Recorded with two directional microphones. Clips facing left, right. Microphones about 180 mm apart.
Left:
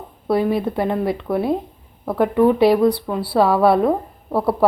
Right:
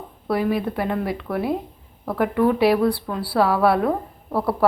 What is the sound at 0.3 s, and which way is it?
Speech, 25° left (ahead or behind).